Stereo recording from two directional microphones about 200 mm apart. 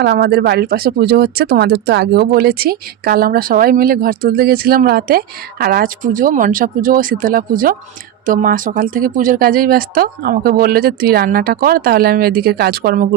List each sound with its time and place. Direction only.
0.0 s speech: 55° right (ahead or behind)